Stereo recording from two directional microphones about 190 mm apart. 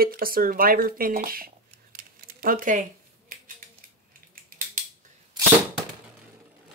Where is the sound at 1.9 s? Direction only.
50° right (ahead or behind).